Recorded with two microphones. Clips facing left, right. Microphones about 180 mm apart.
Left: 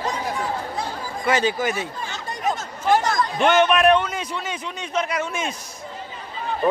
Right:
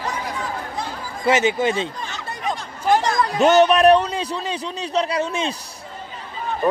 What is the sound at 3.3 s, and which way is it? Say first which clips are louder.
A man's voice: right 4 dB; 40° right (ahead or behind).